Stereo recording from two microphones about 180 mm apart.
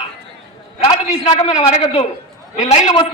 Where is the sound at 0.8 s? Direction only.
35° left (ahead or behind).